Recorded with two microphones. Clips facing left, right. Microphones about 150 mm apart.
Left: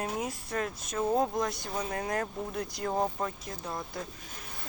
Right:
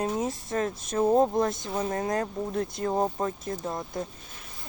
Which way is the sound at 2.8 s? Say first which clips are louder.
Right 2 dB; 25° right (ahead or behind).